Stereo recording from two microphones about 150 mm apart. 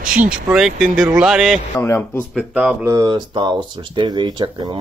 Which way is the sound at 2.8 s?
25° right (ahead or behind).